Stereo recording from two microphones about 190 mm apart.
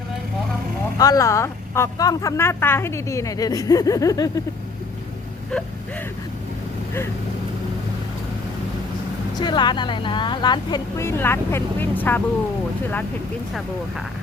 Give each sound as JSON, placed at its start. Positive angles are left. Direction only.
{"t": 0.9, "sound": "speech", "side_deg": 20}
{"t": 9.3, "sound": "speech", "side_deg": 25}